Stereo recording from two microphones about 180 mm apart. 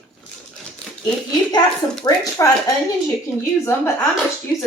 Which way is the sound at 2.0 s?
15° left (ahead or behind).